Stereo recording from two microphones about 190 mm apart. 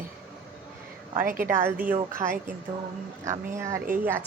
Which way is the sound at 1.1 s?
50° right (ahead or behind).